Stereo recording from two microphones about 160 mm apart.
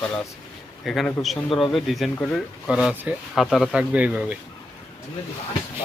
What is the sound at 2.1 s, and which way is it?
Speech, 10° left (ahead or behind).